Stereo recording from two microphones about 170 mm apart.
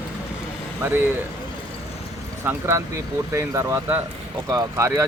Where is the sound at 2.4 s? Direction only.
15° right (ahead or behind).